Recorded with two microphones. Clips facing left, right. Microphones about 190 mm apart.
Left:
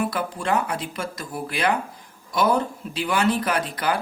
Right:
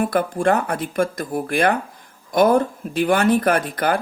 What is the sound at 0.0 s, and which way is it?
Speech, 50° right (ahead or behind).